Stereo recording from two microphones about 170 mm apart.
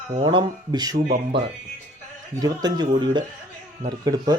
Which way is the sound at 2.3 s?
20° right (ahead or behind).